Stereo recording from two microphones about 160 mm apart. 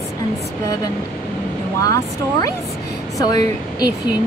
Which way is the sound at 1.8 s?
20° left (ahead or behind).